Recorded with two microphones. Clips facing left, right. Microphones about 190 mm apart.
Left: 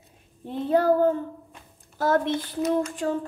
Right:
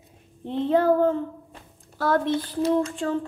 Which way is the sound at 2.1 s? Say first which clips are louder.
Right 1 dB; 20° left (ahead or behind).